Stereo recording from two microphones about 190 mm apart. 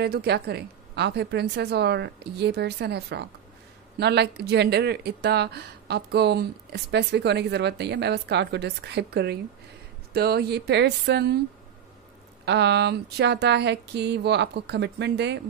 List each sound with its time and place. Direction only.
0.0 s speech: 60° right (ahead or behind)
12.4 s speech: 65° right (ahead or behind)